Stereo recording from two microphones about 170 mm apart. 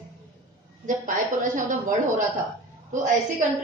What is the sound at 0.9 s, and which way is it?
A woman's voice, 50° right (ahead or behind).